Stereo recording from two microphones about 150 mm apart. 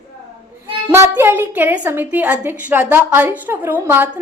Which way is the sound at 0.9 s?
15° right (ahead or behind).